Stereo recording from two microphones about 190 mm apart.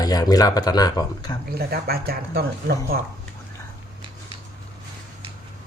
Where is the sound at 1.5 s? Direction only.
55° right (ahead or behind).